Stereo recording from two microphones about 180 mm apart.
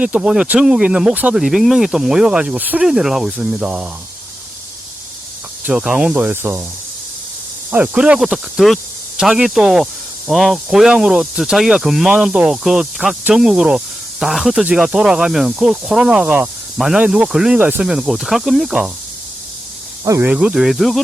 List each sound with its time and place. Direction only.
0.0 s speech: 5° right (ahead or behind)
5.6 s speech: 5° right (ahead or behind)
7.7 s speech: 10° right (ahead or behind)
20.1 s speech: 15° right (ahead or behind)
20.3 s speech: 5° right (ahead or behind)